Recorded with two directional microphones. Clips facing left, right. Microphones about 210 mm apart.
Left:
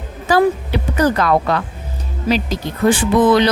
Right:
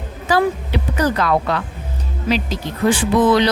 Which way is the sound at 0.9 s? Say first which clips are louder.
Left 3 dB; 50° left (ahead or behind).